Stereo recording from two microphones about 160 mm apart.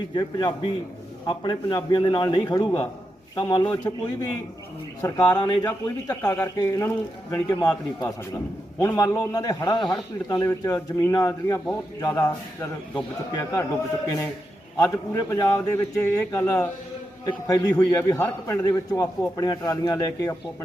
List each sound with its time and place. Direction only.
0.1 s a man's voice: 25° left (ahead or behind)
13.3 s a man's voice: 20° left (ahead or behind)
14.8 s a man's voice: 20° left (ahead or behind)